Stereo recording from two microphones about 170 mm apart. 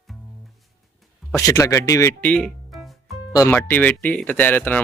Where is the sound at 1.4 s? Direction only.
20° left (ahead or behind).